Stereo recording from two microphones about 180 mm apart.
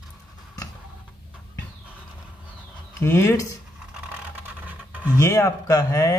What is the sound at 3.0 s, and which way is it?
Speech, 15° left (ahead or behind).